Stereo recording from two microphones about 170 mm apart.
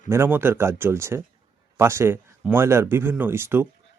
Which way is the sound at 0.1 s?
15° right (ahead or behind).